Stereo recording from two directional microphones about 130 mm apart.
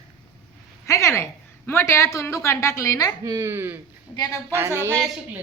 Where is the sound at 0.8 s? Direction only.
20° left (ahead or behind).